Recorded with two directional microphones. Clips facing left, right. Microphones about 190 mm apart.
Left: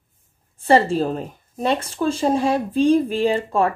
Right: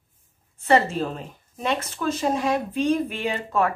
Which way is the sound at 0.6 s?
30° left (ahead or behind).